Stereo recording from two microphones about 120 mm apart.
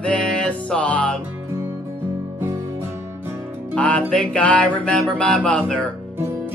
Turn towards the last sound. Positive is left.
turn(degrees=5)  # may be behind; listen again after turning